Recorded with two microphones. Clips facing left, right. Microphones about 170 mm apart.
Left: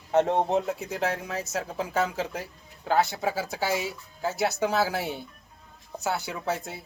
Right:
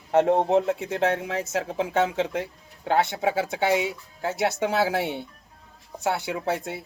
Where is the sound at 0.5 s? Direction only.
25° right (ahead or behind).